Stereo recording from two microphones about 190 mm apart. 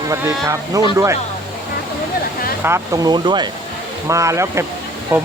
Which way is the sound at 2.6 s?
15° right (ahead or behind).